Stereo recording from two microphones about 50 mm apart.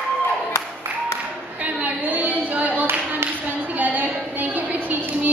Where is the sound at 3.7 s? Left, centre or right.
Right.